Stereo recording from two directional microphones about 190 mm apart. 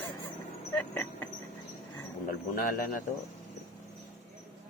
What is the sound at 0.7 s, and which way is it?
Speech, 10° left (ahead or behind).